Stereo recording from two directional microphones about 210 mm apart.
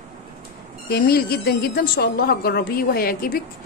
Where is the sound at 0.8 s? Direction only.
45° left (ahead or behind).